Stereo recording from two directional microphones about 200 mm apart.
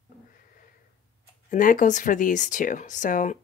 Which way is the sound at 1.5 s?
40° left (ahead or behind).